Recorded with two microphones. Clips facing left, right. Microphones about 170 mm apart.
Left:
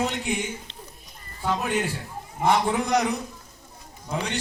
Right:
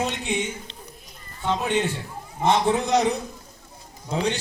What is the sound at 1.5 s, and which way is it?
Speech, 25° right (ahead or behind).